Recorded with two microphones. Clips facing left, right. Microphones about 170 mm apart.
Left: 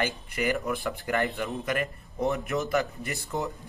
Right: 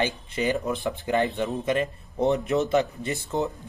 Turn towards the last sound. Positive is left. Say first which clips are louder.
# right 5 dB
turn(degrees=-20)  # may be behind; listen again after turning